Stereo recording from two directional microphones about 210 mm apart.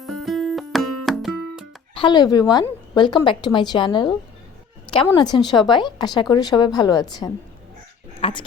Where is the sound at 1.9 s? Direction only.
20° left (ahead or behind).